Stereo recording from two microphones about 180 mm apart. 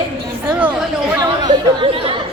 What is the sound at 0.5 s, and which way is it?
Speech, 10° right (ahead or behind).